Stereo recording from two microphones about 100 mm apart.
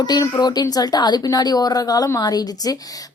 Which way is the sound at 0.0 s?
45° left (ahead or behind).